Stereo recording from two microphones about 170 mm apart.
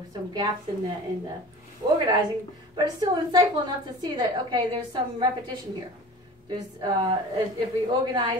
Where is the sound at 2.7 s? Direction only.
25° right (ahead or behind).